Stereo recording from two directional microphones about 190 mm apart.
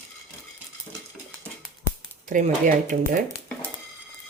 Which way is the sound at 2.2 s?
45° right (ahead or behind).